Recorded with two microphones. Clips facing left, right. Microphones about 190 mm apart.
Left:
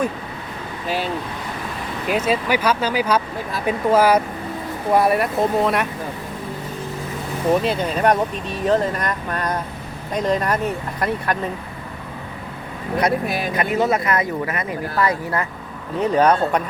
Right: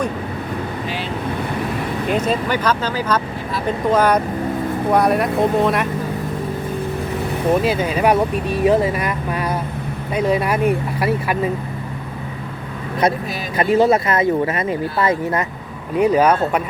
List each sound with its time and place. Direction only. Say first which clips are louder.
2.0 s speech: even; 5° left (ahead or behind)
7.5 s speech: right 1 dB; 5° right (ahead or behind)
13.2 s speech: left 3 dB; 60° left (ahead or behind)
13.6 s speech: right 7 dB; 30° right (ahead or behind)
16.0 s speech: right 2 dB; 10° right (ahead or behind)